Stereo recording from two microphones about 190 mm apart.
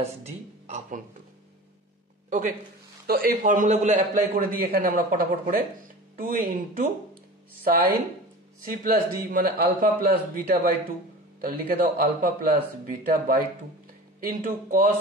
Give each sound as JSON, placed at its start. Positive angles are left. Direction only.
{"t": 0.0, "sound": "speech", "side_deg": -35}
{"t": 2.2, "sound": "speech", "side_deg": -40}
{"t": 3.1, "sound": "a man's voice", "side_deg": -50}
{"t": 8.6, "sound": "a man's voice", "side_deg": -50}